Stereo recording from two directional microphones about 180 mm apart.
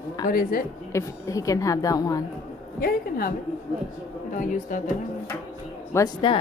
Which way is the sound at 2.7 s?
55° left (ahead or behind).